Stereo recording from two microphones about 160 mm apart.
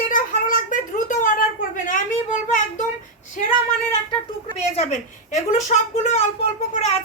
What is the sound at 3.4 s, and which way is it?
Speech, 55° left (ahead or behind).